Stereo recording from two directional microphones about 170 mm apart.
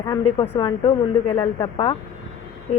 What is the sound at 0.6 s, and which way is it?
A woman's voice, 35° left (ahead or behind).